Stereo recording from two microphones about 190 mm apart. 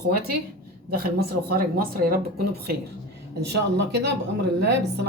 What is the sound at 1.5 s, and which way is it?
Speech, 50° right (ahead or behind).